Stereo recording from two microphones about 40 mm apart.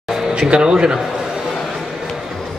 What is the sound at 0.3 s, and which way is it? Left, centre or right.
Speech, right.